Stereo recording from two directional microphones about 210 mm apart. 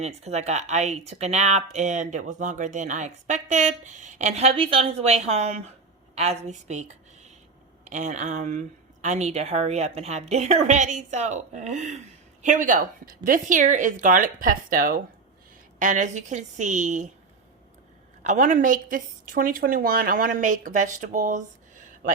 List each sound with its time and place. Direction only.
0.0 s a woman's voice: 30° right (ahead or behind)
18.2 s speech: 35° right (ahead or behind)